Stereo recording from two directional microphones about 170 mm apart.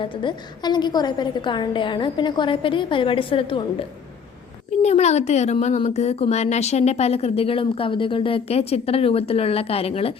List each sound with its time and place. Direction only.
0.0 s a woman's voice: 30° left (ahead or behind)